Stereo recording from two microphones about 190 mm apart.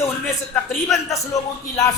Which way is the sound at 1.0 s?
15° left (ahead or behind).